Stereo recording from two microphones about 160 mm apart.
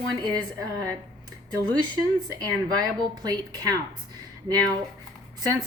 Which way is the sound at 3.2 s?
25° right (ahead or behind).